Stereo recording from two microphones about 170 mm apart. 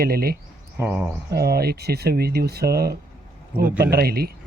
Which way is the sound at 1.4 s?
65° right (ahead or behind).